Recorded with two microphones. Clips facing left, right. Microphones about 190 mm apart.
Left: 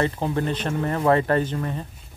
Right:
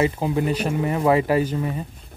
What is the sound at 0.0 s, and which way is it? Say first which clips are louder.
Speech: right 2 dB; 10° right (ahead or behind).